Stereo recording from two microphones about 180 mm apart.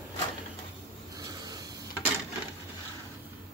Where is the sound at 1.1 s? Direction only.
20° right (ahead or behind).